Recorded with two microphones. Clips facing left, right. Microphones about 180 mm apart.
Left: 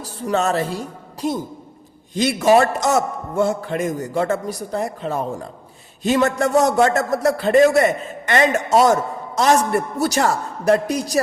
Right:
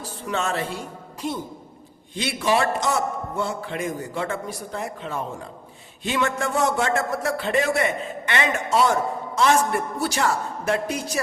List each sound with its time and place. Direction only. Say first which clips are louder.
0.0 s a man's voice: left 6 dB; 40° left (ahead or behind)